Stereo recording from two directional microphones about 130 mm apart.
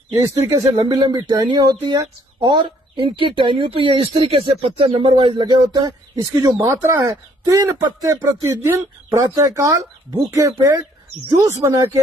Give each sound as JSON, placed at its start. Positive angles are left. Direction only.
{"t": 0.3, "sound": "speech", "side_deg": -25}
{"t": 6.6, "sound": "speech", "side_deg": -20}